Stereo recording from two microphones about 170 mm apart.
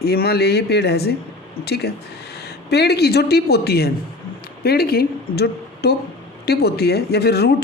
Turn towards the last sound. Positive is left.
turn(degrees=70)  # may be behind; listen again after turning